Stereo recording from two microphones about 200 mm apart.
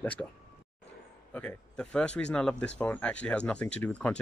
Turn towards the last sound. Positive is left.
turn(degrees=5)  # may be behind; listen again after turning